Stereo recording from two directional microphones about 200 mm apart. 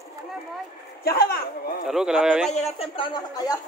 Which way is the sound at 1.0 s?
50° left (ahead or behind).